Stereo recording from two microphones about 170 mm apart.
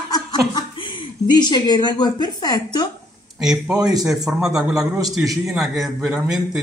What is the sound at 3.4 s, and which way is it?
A man's voice, 5° right (ahead or behind).